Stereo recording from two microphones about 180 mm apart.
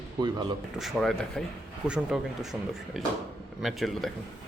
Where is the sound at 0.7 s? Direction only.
Centre (ahead or behind).